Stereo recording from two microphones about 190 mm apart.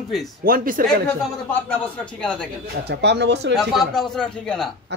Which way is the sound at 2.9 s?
65° right (ahead or behind).